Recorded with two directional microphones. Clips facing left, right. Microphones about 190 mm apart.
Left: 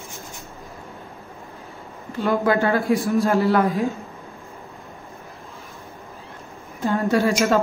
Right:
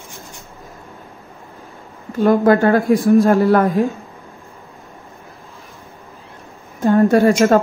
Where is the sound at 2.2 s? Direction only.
50° right (ahead or behind).